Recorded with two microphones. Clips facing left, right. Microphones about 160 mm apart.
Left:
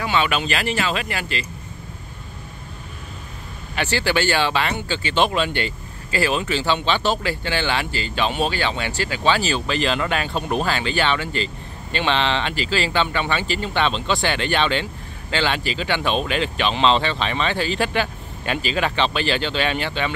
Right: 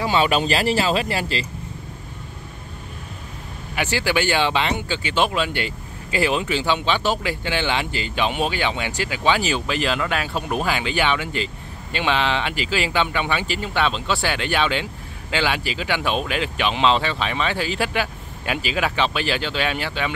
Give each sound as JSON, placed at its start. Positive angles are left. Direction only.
{"t": 0.0, "sound": "speech", "side_deg": -35}
{"t": 3.7, "sound": "speech", "side_deg": -10}
{"t": 6.1, "sound": "speech", "side_deg": -20}